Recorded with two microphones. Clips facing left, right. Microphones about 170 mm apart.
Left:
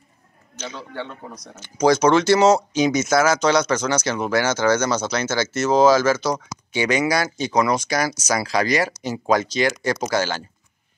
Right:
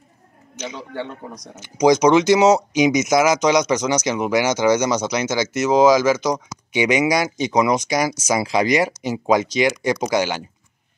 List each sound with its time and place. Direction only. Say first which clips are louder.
0.6 s speech: right 3 dB; 15° right (ahead or behind)